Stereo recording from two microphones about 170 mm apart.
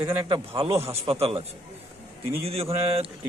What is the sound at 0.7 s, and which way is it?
Speech, 15° right (ahead or behind).